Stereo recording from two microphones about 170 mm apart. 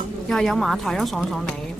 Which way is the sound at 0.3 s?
Centre (ahead or behind).